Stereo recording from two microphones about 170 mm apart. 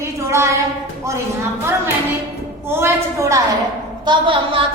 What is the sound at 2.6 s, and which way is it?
A woman's voice, 15° right (ahead or behind).